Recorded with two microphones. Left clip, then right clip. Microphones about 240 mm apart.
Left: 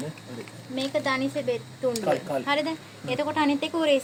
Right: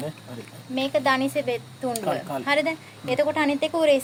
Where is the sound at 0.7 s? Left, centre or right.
Right.